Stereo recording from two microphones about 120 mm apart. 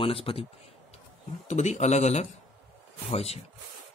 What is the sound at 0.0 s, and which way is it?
Speech, 50° left (ahead or behind).